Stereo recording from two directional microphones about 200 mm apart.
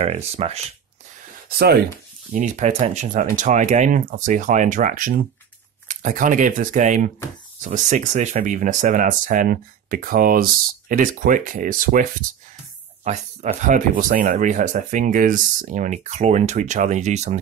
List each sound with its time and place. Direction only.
0.0 s speech: 30° right (ahead or behind)
2.3 s speech: 40° right (ahead or behind)